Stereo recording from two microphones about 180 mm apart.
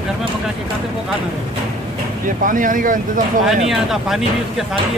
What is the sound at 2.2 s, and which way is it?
Speech, 50° right (ahead or behind).